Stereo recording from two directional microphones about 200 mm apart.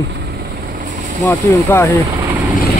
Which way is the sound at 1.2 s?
15° left (ahead or behind).